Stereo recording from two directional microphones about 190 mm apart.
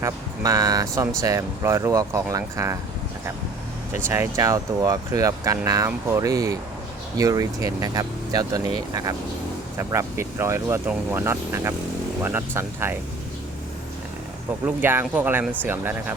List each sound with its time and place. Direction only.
0.0 s speech: 20° right (ahead or behind)
3.9 s speech: 15° right (ahead or behind)
14.8 s speech: 10° right (ahead or behind)